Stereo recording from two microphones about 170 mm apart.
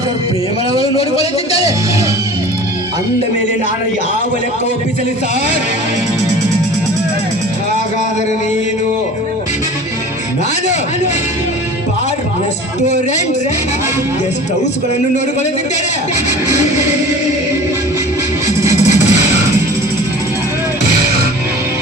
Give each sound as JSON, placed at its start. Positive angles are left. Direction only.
{"t": 0.9, "sound": "a man's voice", "side_deg": 35}
{"t": 18.9, "sound": "music", "side_deg": 45}